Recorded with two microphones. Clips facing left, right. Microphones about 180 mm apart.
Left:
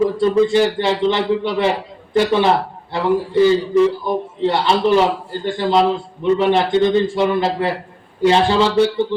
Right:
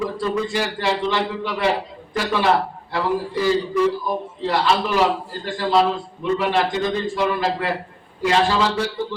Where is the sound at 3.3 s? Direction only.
25° left (ahead or behind).